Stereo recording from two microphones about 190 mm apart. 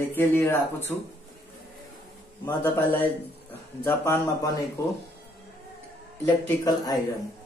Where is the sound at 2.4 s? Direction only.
10° left (ahead or behind).